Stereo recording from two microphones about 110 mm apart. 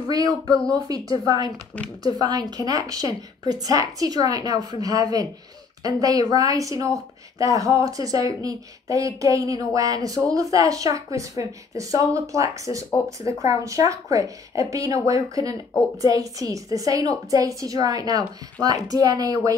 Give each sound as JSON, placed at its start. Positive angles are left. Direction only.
{"t": 0.1, "sound": "a woman's voice", "side_deg": -35}